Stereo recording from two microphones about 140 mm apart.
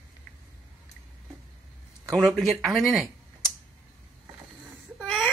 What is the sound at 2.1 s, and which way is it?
Speech, centre (ahead or behind).